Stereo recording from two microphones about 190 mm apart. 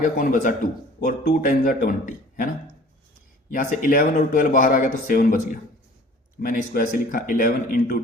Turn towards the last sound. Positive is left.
turn(degrees=50)  # may be behind; listen again after turning